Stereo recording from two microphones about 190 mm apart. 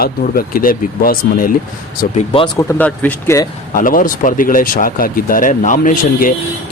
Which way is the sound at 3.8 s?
45° left (ahead or behind).